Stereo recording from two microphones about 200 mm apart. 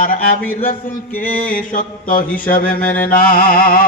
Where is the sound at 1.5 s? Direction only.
45° left (ahead or behind).